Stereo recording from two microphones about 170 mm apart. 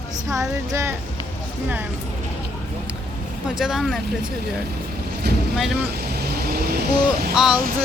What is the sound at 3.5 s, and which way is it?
Speech, centre (ahead or behind).